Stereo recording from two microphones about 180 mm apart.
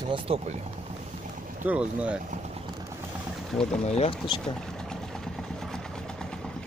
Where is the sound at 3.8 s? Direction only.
35° left (ahead or behind).